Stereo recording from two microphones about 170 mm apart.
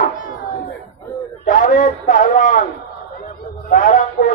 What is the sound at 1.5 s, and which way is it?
Speech, 50° left (ahead or behind).